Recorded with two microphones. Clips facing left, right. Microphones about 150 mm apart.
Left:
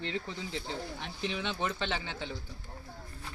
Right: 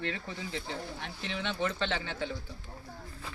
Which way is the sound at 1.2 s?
15° left (ahead or behind).